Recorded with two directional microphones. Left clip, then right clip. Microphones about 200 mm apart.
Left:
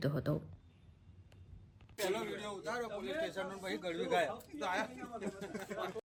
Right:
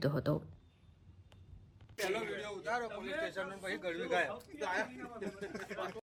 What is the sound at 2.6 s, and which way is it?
A man's voice, 60° left (ahead or behind).